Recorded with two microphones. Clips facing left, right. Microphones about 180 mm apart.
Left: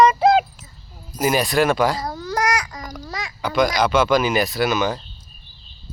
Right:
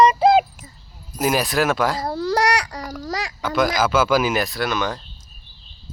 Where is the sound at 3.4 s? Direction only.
Centre (ahead or behind).